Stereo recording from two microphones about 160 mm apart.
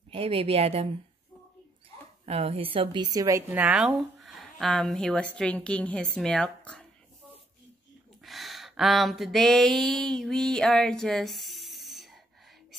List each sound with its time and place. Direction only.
0.1 s speech: 35° right (ahead or behind)
2.2 s a woman's voice: 40° right (ahead or behind); by 6.9 s 5° left (ahead or behind)
8.2 s a sound: centre (ahead or behind)